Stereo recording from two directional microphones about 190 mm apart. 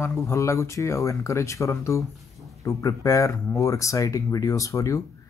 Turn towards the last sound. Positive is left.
turn(degrees=15)  # may be behind; listen again after turning